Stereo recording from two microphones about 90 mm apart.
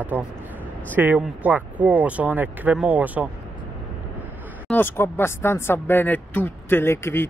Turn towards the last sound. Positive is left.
turn(degrees=25)  # may be behind; listen again after turning